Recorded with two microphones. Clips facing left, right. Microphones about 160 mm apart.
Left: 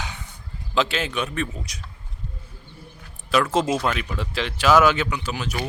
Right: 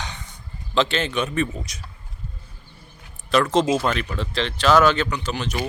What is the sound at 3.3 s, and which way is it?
Speech, 5° left (ahead or behind).